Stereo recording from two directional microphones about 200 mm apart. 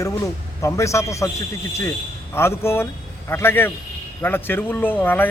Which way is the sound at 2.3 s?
10° left (ahead or behind).